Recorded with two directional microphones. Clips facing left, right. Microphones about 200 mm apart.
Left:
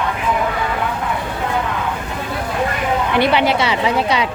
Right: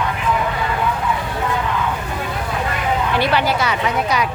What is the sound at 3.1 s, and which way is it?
A woman's voice, 20° left (ahead or behind).